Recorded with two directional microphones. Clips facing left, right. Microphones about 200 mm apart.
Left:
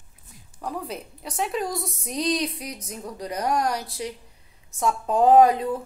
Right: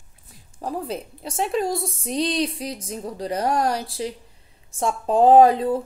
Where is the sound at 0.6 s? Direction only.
30° right (ahead or behind).